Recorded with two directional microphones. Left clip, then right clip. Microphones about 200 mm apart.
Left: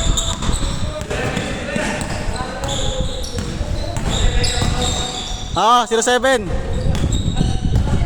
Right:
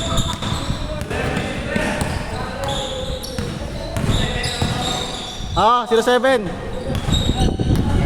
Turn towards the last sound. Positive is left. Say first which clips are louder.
# even
turn(degrees=30)  # may be behind; listen again after turning